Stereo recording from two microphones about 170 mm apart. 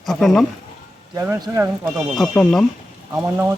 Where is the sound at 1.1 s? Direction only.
15° right (ahead or behind).